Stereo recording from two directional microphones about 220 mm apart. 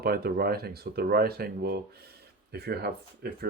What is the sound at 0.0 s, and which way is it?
Speech, 45° right (ahead or behind).